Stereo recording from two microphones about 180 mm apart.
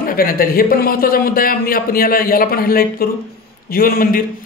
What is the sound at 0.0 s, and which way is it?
A man's voice, 55° left (ahead or behind).